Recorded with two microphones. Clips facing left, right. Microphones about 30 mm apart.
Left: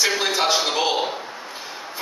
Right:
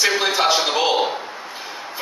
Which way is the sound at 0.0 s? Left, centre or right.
Centre.